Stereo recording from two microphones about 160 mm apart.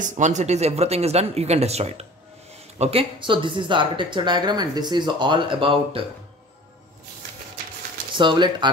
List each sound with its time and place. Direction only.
0.0 s speech: 50° right (ahead or behind); by 6.0 s 35° right (ahead or behind)
8.2 s speech: 30° right (ahead or behind)